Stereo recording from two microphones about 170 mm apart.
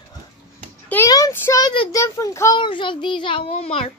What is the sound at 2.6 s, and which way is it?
A child's voice, 30° left (ahead or behind).